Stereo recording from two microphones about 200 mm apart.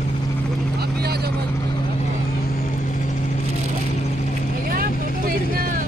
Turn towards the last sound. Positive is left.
turn(degrees=-45)  # may be behind; listen again after turning